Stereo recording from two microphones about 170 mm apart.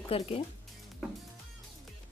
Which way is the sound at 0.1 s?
35° left (ahead or behind).